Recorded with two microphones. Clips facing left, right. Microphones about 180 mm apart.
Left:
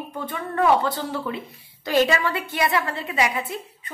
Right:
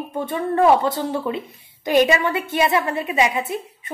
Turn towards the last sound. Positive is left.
turn(degrees=-20)  # may be behind; listen again after turning